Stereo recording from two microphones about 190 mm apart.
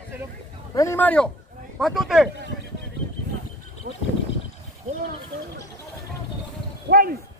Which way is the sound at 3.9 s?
55° right (ahead or behind).